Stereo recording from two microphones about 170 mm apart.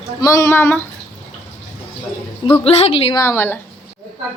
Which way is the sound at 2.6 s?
35° left (ahead or behind).